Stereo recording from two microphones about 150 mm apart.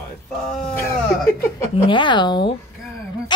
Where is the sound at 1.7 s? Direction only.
35° left (ahead or behind).